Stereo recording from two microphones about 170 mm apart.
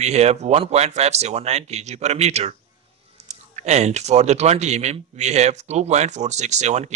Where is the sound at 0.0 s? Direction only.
40° right (ahead or behind).